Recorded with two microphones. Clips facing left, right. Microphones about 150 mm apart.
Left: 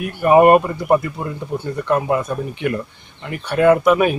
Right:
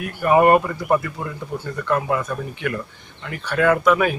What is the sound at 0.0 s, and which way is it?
Speech, 20° left (ahead or behind).